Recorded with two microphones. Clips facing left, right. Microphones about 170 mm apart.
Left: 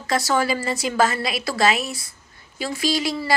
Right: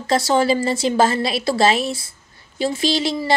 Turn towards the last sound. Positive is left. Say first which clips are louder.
# right 3 dB
turn(degrees=-25)  # may be behind; listen again after turning